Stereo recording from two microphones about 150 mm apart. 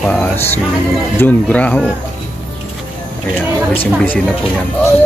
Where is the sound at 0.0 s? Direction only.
10° left (ahead or behind).